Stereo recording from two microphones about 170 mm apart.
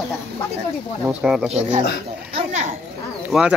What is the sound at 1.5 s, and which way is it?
A child's voice, 40° right (ahead or behind).